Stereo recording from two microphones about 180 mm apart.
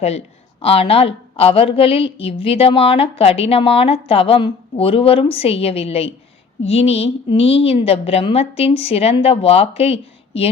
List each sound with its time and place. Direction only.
0.6 s a woman's voice: 35° left (ahead or behind)